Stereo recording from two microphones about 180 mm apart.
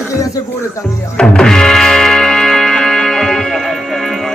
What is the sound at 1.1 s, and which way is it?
Music, 5° left (ahead or behind).